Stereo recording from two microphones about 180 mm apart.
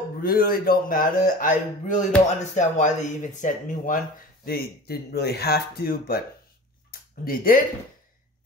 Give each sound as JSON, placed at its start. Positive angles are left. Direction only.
{"t": 0.2, "sound": "speech", "side_deg": 55}
{"t": 4.5, "sound": "speech", "side_deg": 60}
{"t": 6.9, "sound": "a sound", "side_deg": 55}